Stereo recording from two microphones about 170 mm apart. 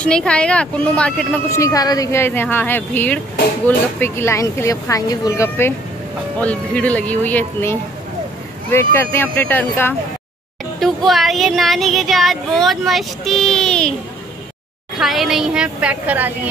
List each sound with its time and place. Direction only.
0.0 s speech: 5° left (ahead or behind)
1.5 s speech: 20° left (ahead or behind)
10.8 s child singing: centre (ahead or behind)
15.0 s child singing: centre (ahead or behind)